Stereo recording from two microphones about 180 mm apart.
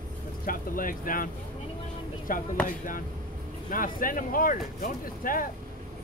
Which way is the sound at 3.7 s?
50° left (ahead or behind).